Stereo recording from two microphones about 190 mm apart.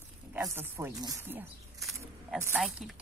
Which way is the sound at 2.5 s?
Centre (ahead or behind).